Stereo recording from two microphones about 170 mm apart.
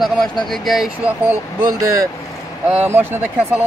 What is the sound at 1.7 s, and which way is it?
Speech, 20° right (ahead or behind).